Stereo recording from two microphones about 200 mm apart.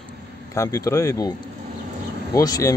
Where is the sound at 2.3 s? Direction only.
20° left (ahead or behind).